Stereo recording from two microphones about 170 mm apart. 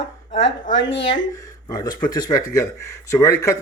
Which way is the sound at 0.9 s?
90° left.